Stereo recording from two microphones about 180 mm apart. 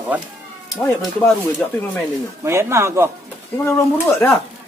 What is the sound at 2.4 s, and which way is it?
Speech, 15° right (ahead or behind).